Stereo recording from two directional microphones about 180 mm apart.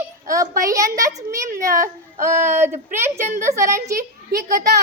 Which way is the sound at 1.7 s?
45° right (ahead or behind).